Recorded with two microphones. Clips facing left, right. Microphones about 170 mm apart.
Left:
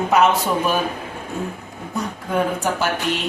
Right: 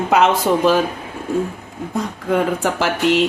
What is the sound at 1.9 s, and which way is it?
Speech, 90° right.